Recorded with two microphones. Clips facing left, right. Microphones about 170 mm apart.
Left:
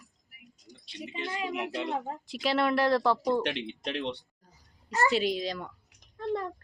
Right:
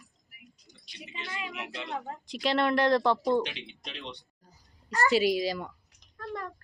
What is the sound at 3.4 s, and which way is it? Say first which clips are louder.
Speech: left 7 dB; 65° left (ahead or behind).